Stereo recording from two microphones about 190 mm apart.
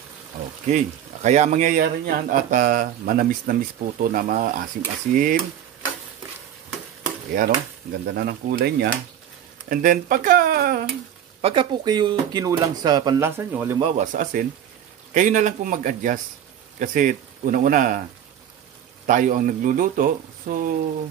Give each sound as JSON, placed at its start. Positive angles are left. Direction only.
{"t": 0.7, "sound": "speech", "side_deg": -40}
{"t": 7.3, "sound": "speech", "side_deg": -50}
{"t": 9.7, "sound": "speech", "side_deg": -45}
{"t": 11.4, "sound": "speech", "side_deg": -25}
{"t": 13.7, "sound": "speech", "side_deg": -30}
{"t": 14.0, "sound": "speech", "side_deg": -45}
{"t": 19.0, "sound": "speech", "side_deg": -45}